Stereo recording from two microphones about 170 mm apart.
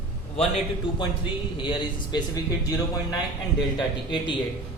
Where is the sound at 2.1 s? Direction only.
20° left (ahead or behind).